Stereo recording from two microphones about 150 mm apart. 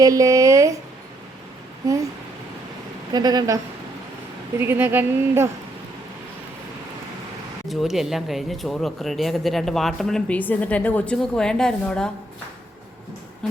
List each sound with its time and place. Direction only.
0.0 s speech: 20° right (ahead or behind)
3.1 s a woman's voice: 30° right (ahead or behind)
4.6 s speech: 15° right (ahead or behind)
7.7 s speech: centre (ahead or behind)